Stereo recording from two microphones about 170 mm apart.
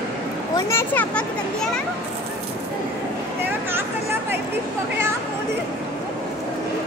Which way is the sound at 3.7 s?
15° right (ahead or behind).